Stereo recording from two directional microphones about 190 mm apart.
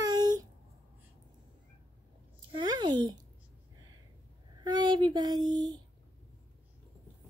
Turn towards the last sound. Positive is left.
turn(degrees=-20)  # may be behind; listen again after turning